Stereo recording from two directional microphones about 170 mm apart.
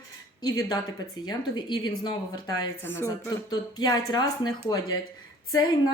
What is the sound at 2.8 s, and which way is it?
Speech, 15° left (ahead or behind).